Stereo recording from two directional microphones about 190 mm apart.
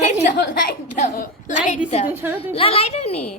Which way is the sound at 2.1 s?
10° right (ahead or behind).